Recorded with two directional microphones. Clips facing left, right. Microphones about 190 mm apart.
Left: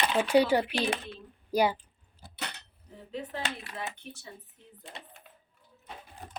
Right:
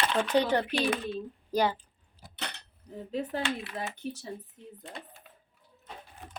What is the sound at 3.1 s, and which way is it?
Speech, 40° right (ahead or behind).